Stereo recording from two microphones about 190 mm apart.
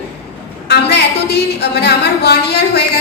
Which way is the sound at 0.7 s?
60° left (ahead or behind).